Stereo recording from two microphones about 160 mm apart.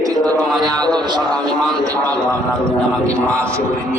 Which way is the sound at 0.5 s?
Centre (ahead or behind).